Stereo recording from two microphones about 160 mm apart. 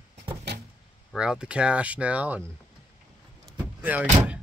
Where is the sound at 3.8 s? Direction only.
10° right (ahead or behind).